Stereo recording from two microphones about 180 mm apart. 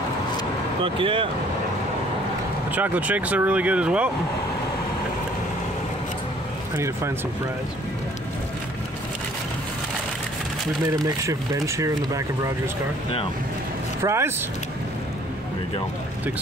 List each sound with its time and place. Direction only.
0.8 s speech: 30° right (ahead or behind)
2.7 s speech: 10° right (ahead or behind)
11.1 s speech: 15° right (ahead or behind)
14.0 s speech: 15° right (ahead or behind)